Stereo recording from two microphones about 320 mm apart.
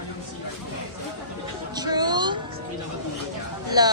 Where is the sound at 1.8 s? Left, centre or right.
Centre.